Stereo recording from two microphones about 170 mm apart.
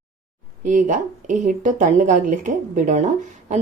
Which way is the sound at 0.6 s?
50° right (ahead or behind).